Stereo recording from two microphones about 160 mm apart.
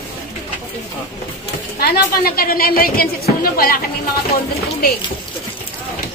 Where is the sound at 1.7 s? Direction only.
75° left (ahead or behind).